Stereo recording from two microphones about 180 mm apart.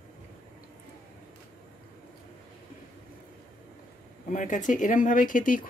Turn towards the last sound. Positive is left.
turn(degrees=50)  # may be behind; listen again after turning